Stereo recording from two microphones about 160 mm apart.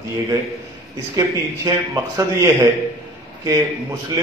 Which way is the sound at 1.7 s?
20° right (ahead or behind).